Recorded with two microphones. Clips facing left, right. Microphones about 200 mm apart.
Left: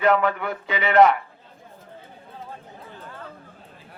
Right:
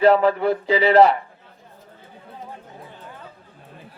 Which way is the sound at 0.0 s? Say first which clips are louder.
Right 5 dB; 30° right (ahead or behind).